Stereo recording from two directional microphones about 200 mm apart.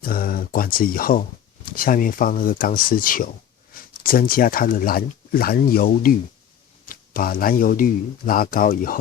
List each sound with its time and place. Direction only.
0.0 s speech: 45° left (ahead or behind)